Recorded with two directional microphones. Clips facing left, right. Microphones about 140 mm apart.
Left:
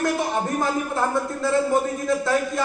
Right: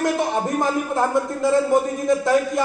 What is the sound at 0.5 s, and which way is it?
A man's voice, 15° right (ahead or behind).